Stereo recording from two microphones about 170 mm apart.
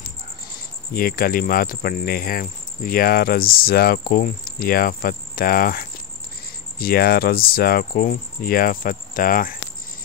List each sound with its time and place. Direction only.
0.9 s speech: 60° left (ahead or behind)